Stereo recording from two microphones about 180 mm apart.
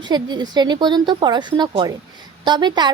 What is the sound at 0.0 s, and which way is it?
Speech, 25° right (ahead or behind).